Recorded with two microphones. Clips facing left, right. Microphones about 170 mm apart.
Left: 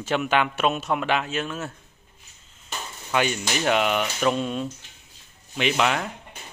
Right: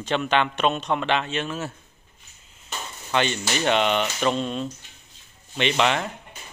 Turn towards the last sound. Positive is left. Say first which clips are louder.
# right 1 dB
turn(degrees=5)  # may be behind; listen again after turning